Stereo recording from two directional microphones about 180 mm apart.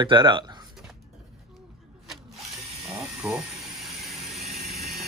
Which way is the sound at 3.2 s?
5° right (ahead or behind).